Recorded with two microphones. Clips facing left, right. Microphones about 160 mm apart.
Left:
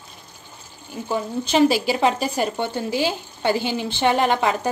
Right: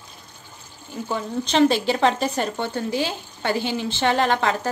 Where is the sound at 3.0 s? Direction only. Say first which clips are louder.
Left 4 dB; 20° left (ahead or behind).